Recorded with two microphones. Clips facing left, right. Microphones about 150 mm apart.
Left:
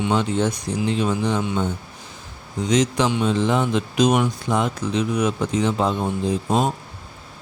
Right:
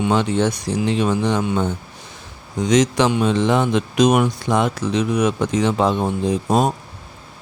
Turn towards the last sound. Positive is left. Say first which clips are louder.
# right 3 dB
turn(degrees=-75)  # may be behind; listen again after turning